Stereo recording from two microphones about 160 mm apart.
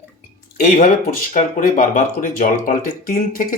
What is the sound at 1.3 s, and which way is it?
Speech, 55° left (ahead or behind).